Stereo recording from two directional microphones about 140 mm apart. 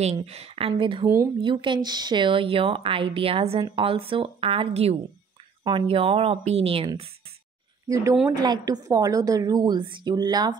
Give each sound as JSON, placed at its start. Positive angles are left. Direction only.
{"t": 0.0, "sound": "speech", "side_deg": -50}
{"t": 1.0, "sound": "a woman's voice", "side_deg": -20}
{"t": 1.4, "sound": "speech", "side_deg": -35}
{"t": 7.9, "sound": "a woman's voice", "side_deg": -20}